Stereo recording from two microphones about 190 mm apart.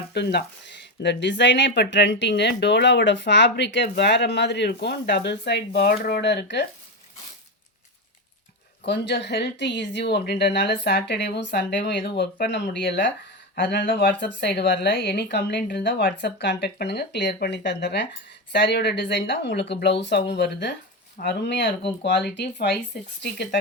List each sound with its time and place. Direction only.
0.1 s speech: 60° left (ahead or behind)
8.8 s speech: 60° left (ahead or behind)